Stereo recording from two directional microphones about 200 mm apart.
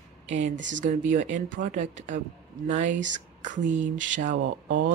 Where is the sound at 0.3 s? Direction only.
35° right (ahead or behind).